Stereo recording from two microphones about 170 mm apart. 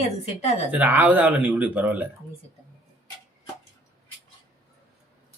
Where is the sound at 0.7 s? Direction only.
10° right (ahead or behind).